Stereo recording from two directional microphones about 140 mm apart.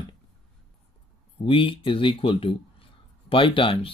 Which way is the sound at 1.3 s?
40° left (ahead or behind).